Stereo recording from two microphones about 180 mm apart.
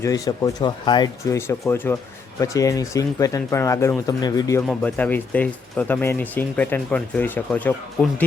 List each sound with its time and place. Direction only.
0.0 s speech: 20° left (ahead or behind)
4.6 s speech: 5° left (ahead or behind)